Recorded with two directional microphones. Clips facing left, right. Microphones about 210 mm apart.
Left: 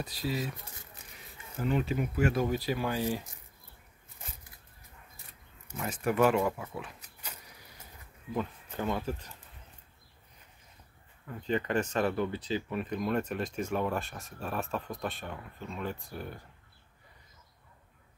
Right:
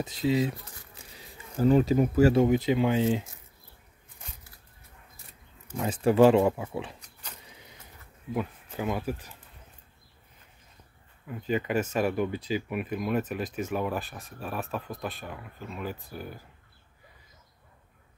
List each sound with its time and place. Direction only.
0.0 s speech: 20° right (ahead or behind)
0.9 s a sound: 35° right (ahead or behind)
2.4 s speech: 20° right (ahead or behind)
5.8 s speech: 30° right (ahead or behind)
7.4 s printer: 25° right (ahead or behind)
8.3 s speech: 10° right (ahead or behind)
11.2 s speech: 10° right (ahead or behind)